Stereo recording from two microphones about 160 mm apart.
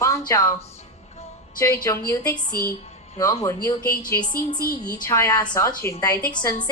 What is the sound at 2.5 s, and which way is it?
Speech, 70° left (ahead or behind).